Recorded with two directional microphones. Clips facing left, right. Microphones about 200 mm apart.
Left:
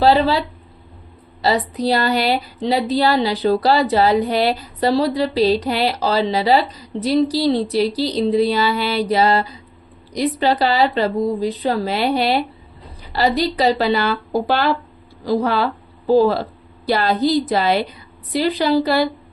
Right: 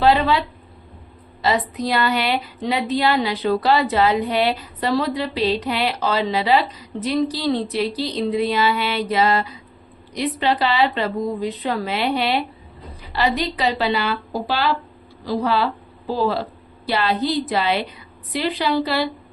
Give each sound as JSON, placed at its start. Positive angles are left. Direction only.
{"t": 0.0, "sound": "speech", "side_deg": 35}